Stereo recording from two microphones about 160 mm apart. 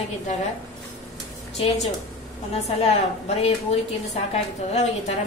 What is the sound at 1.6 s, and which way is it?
A woman's voice, 40° left (ahead or behind).